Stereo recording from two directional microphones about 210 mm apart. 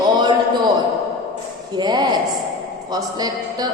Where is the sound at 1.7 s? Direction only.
20° right (ahead or behind).